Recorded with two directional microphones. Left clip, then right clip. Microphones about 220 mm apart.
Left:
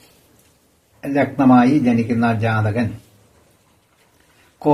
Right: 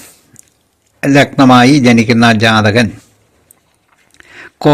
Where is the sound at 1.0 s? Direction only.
45° right (ahead or behind).